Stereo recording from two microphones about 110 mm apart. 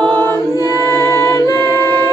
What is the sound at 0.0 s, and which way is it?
Music, 15° left (ahead or behind).